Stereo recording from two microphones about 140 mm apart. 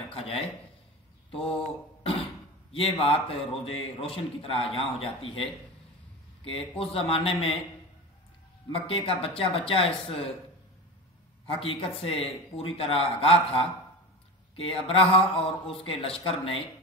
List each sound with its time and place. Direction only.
0.1 s a sound: 40° left (ahead or behind)
1.3 s mantra: 45° left (ahead or behind)
2.8 s a man's voice: 40° left (ahead or behind)
8.7 s a man's voice: 40° left (ahead or behind)
11.6 s a man's voice: 40° left (ahead or behind)